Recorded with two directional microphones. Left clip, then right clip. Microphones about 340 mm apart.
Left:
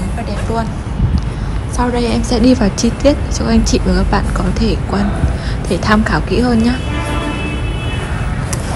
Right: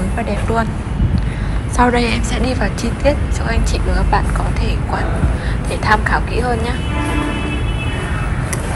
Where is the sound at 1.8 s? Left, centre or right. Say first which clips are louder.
Right 2 dB; centre; by 6.4 s left.